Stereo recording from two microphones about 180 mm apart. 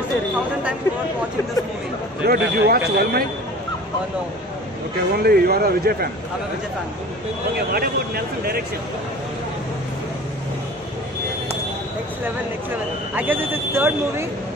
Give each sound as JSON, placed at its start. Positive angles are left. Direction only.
{"t": 2.2, "sound": "speech", "side_deg": -60}
{"t": 4.9, "sound": "speech", "side_deg": -60}
{"t": 7.7, "sound": "speech", "side_deg": -55}
{"t": 13.1, "sound": "speech", "side_deg": -10}